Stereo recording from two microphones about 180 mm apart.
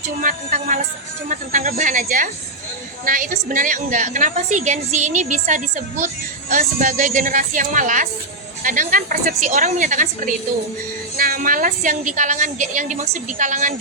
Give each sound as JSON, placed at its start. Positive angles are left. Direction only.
{"t": 0.2, "sound": "a woman's voice", "side_deg": -50}